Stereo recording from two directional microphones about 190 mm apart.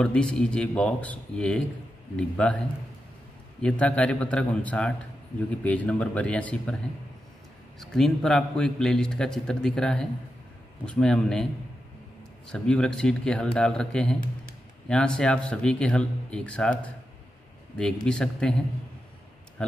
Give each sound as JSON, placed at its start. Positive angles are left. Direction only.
{"t": 0.0, "sound": "a man's voice", "side_deg": 5}
{"t": 3.6, "sound": "a man's voice", "side_deg": 5}
{"t": 7.8, "sound": "a man's voice", "side_deg": 5}
{"t": 12.4, "sound": "a man's voice", "side_deg": 5}
{"t": 18.0, "sound": "a man's voice", "side_deg": 5}